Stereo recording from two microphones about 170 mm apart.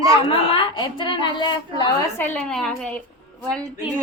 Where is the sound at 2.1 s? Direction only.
10° left (ahead or behind).